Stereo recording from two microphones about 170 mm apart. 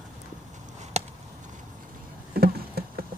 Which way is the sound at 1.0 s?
40° right (ahead or behind).